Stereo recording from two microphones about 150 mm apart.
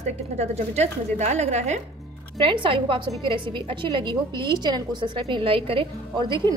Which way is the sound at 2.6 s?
35° right (ahead or behind).